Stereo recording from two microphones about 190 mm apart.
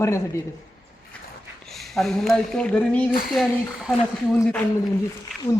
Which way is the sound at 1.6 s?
Centre (ahead or behind).